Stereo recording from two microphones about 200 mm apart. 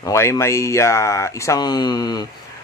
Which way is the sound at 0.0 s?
15° left (ahead or behind).